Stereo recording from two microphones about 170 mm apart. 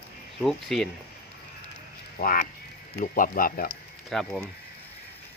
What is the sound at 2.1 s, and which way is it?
Speech, 55° left (ahead or behind).